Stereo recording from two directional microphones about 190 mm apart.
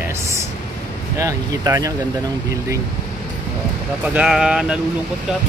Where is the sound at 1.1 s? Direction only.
15° right (ahead or behind).